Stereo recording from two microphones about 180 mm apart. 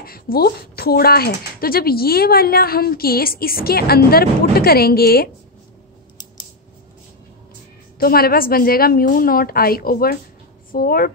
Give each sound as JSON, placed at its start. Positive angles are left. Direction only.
{"t": 0.0, "sound": "speech", "side_deg": 55}
{"t": 8.0, "sound": "speech", "side_deg": 55}